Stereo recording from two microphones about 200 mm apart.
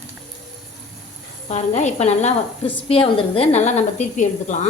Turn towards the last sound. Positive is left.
turn(degrees=35)  # may be behind; listen again after turning